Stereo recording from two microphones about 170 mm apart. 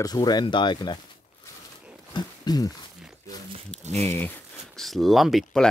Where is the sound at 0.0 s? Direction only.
25° left (ahead or behind).